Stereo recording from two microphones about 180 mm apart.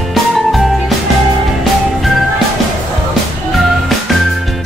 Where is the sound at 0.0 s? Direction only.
Centre (ahead or behind).